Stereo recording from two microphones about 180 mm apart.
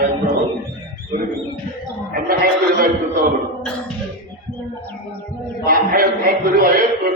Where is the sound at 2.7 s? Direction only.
55° right (ahead or behind).